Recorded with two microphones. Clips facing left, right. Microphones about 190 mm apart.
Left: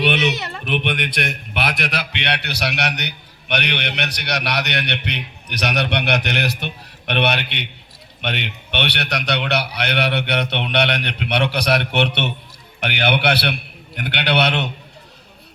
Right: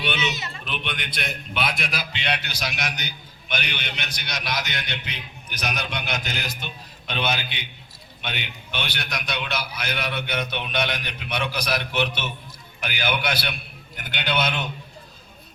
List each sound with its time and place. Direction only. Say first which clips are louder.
0.0 s speech: left 8 dB; 65° left (ahead or behind)